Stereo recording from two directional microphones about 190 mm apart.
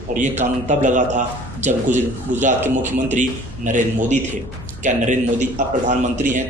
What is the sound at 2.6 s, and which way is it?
Speech, 10° right (ahead or behind).